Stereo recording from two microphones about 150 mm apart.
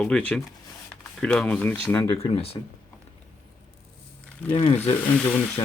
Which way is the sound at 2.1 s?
40° left (ahead or behind).